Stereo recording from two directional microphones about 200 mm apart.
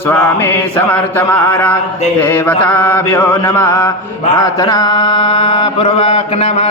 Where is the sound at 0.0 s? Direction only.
10° left (ahead or behind).